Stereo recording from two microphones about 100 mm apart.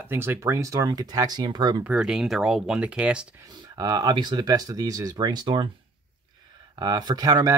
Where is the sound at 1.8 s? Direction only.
10° right (ahead or behind).